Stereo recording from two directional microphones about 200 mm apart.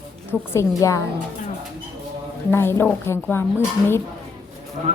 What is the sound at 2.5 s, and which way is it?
Speech, 10° left (ahead or behind).